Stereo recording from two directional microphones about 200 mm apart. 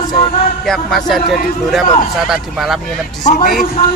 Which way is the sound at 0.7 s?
Centre (ahead or behind).